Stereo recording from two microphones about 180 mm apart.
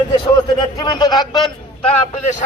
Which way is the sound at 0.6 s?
25° left (ahead or behind).